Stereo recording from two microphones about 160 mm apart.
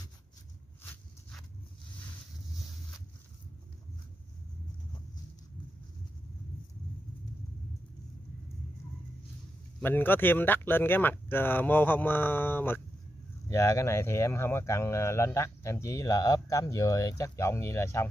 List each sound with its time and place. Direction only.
9.8 s speech: 10° left (ahead or behind)